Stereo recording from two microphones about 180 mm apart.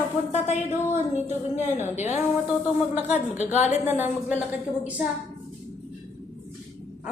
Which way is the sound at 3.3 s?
40° left (ahead or behind).